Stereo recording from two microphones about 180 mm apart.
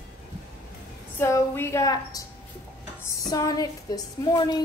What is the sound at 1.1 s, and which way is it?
A woman's voice, 15° left (ahead or behind).